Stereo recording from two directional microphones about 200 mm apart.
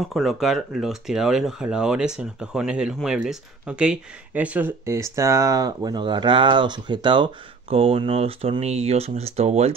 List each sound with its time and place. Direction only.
0.1 s speech: centre (ahead or behind); by 9.8 s 30° right (ahead or behind)